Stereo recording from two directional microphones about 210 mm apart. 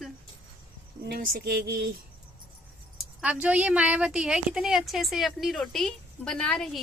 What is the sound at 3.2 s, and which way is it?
A woman's voice, 5° right (ahead or behind).